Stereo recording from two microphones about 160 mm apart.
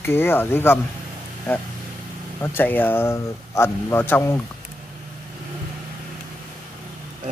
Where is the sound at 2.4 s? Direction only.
15° left (ahead or behind).